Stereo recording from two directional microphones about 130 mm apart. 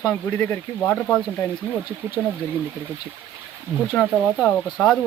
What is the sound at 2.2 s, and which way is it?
Speech, centre (ahead or behind).